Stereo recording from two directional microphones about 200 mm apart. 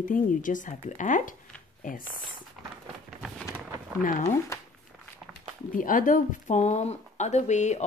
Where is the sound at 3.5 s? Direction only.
15° right (ahead or behind).